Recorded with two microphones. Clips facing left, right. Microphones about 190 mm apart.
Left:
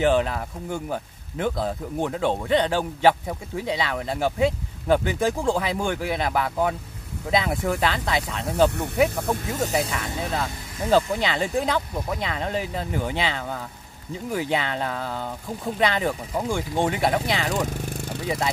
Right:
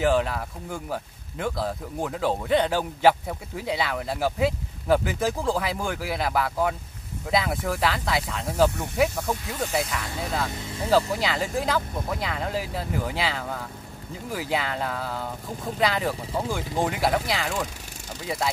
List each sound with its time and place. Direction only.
0.0 s speech: centre (ahead or behind)
8.7 s speech: 60° left (ahead or behind); by 9.8 s 45° left (ahead or behind)
9.8 s speech: centre (ahead or behind)